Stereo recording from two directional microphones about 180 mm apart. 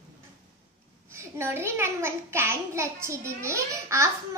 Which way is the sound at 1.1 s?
15° right (ahead or behind).